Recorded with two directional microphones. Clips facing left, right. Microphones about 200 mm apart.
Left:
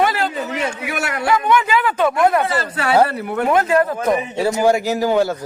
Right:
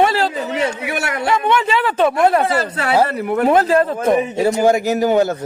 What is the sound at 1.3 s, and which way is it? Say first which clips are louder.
A man's voice: left 1 dB; 30° right (ahead or behind).